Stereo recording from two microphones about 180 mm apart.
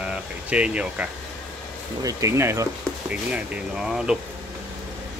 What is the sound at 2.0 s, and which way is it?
Speech, 20° right (ahead or behind).